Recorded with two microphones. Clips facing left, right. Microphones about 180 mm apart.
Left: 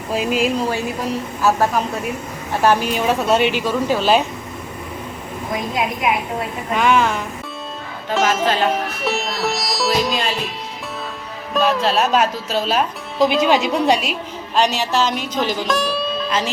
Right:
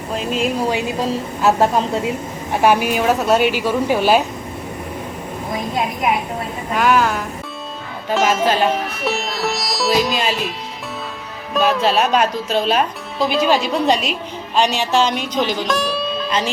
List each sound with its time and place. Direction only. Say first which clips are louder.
0.1 s a woman's voice: left 2 dB; 5° left (ahead or behind)
0.6 s a woman's voice: right 2 dB; 20° right (ahead or behind); by 3.6 s centre (ahead or behind)
3.7 s a woman's voice: right 2 dB; 15° right (ahead or behind)
6.7 s a woman's voice: right 1 dB; centre (ahead or behind)
11.5 s a woman's voice: right 1 dB; centre (ahead or behind)
13.1 s a woman's voice: left 1 dB; 20° left (ahead or behind); by 16.5 s centre (ahead or behind)